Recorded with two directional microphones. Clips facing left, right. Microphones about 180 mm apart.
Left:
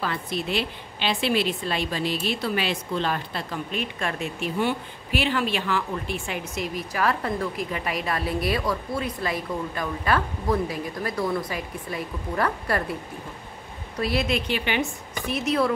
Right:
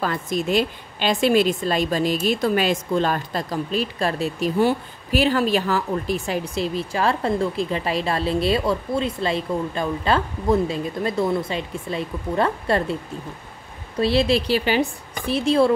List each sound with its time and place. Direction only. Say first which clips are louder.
0.0 s a woman's voice: right 5 dB; 45° right (ahead or behind); by 12.9 s 25° right (ahead or behind)
13.9 s a woman's voice: right 6 dB; 30° right (ahead or behind)